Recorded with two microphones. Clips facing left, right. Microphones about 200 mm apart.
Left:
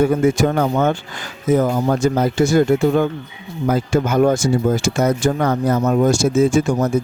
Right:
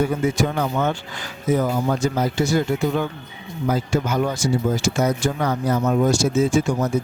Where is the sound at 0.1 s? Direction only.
50° left (ahead or behind).